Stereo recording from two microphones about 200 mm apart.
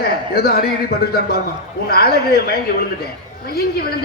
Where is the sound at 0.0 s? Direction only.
50° left (ahead or behind).